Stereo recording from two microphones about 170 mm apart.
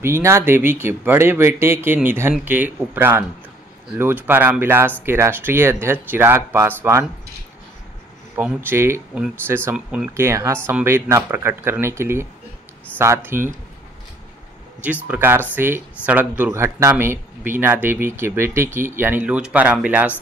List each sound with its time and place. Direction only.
0.0 s speech: 15° right (ahead or behind)
8.4 s speech: 10° right (ahead or behind)
14.8 s speech: 10° right (ahead or behind)